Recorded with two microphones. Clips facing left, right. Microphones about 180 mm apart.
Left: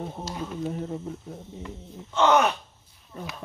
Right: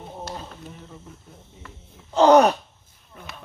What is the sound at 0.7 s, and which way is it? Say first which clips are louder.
Speech: left 11 dB; 45° left (ahead or behind).